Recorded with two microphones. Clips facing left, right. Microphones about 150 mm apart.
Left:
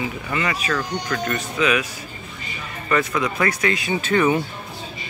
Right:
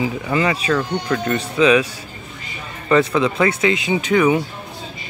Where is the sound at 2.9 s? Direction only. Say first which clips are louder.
Right 6 dB; 30° right (ahead or behind); by 4.4 s 10° right (ahead or behind).